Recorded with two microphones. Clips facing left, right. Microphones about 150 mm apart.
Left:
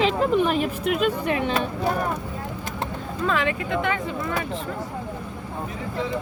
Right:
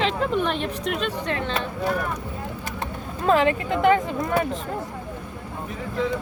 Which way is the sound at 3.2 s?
40° right (ahead or behind).